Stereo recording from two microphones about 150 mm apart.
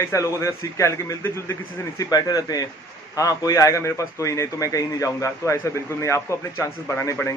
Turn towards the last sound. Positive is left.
turn(degrees=20)  # may be behind; listen again after turning